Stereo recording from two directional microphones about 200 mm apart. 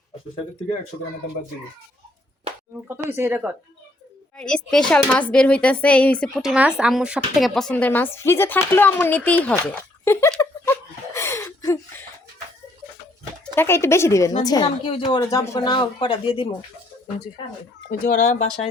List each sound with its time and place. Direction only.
2.8 s speech: 10° right (ahead or behind)
4.4 s speech: 5° left (ahead or behind)
13.6 s a woman's voice: 10° left (ahead or behind)
18.0 s speech: 45° left (ahead or behind)